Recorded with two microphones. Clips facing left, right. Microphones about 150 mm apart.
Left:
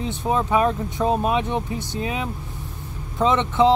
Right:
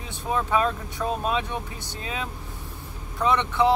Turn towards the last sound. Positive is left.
turn(degrees=20)  # may be behind; listen again after turning